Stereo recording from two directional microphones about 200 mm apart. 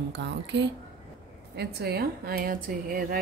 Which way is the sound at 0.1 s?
60° right (ahead or behind).